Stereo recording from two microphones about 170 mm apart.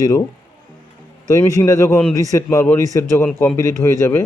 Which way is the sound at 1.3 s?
20° left (ahead or behind).